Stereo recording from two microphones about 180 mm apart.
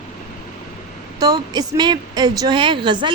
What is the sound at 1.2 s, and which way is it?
Speech, 20° right (ahead or behind).